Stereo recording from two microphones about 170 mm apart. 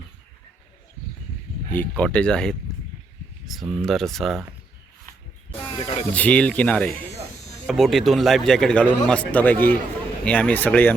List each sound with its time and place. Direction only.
1.7 s a man's voice: 10° left (ahead or behind)
5.8 s speech: 40° left (ahead or behind)
6.1 s a man's voice: 5° left (ahead or behind)